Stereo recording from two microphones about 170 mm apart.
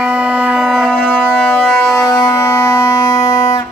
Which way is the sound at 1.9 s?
15° left (ahead or behind).